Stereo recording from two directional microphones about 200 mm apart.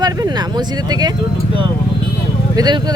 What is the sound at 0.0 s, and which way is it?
Speech, 20° right (ahead or behind).